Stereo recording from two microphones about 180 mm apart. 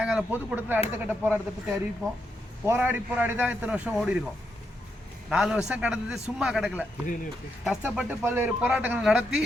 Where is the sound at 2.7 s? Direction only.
10° right (ahead or behind).